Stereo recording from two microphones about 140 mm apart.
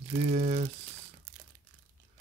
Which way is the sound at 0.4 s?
60° right (ahead or behind).